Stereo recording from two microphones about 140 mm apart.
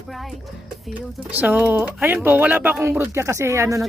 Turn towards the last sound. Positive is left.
turn(degrees=-20)  # may be behind; listen again after turning